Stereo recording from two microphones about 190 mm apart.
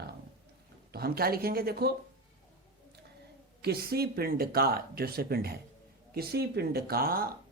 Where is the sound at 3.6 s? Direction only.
55° right (ahead or behind).